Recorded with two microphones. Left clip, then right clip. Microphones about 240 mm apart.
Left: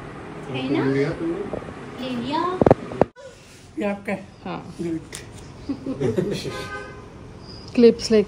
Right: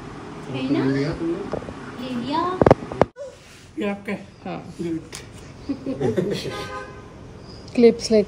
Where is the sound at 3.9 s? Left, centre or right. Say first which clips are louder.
Left 3 dB; centre.